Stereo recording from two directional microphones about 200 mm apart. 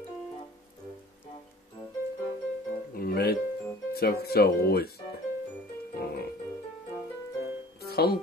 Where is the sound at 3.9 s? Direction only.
50° left (ahead or behind).